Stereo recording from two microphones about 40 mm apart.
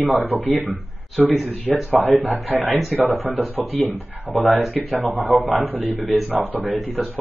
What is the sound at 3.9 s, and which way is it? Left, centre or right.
Speech, right.